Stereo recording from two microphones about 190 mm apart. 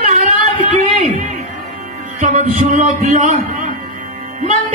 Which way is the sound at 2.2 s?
40° right (ahead or behind).